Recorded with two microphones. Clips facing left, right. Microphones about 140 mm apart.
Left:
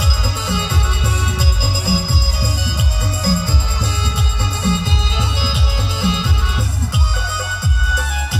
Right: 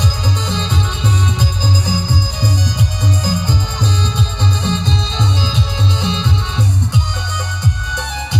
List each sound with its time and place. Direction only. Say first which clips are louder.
0.0 s music: right 3 dB; 10° left (ahead or behind)
3.3 s music: left 3 dB; 15° right (ahead or behind)
4.6 s music: left 4 dB; 10° left (ahead or behind)
5.9 s music: right 1 dB; 25° right (ahead or behind)